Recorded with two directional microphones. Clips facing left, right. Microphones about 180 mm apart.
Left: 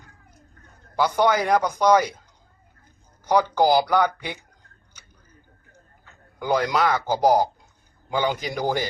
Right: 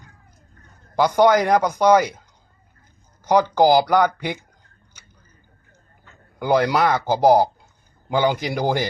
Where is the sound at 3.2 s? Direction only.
10° right (ahead or behind).